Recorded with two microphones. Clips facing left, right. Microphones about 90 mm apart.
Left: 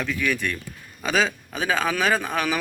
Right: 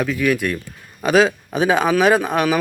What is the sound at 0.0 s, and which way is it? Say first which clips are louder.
A man's voice: right 6 dB; 10° right (ahead or behind).